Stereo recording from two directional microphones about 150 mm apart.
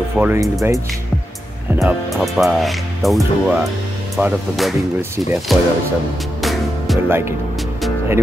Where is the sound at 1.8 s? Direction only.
Centre (ahead or behind).